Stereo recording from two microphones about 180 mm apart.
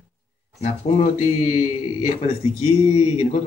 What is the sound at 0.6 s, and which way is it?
Speech, 35° left (ahead or behind).